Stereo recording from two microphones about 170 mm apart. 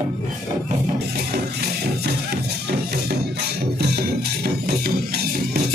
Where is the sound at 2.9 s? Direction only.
70° right (ahead or behind).